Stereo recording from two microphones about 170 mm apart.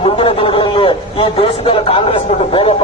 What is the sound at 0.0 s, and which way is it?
A man's voice, 35° left (ahead or behind).